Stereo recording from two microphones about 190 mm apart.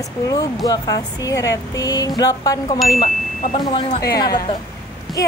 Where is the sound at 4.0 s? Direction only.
55° left (ahead or behind).